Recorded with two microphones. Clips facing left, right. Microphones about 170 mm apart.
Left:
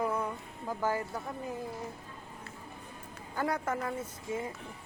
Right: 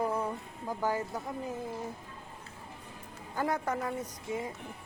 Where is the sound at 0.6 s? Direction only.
15° right (ahead or behind).